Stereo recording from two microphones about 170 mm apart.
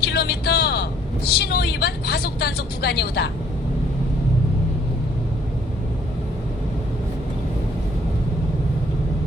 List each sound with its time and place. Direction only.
0.0 s speech: 70° left (ahead or behind)